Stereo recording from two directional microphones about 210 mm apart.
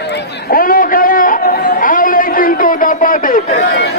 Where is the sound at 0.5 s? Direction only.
40° left (ahead or behind).